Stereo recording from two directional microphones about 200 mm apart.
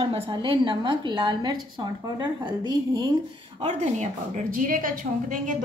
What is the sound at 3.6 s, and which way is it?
A woman's voice, 35° right (ahead or behind).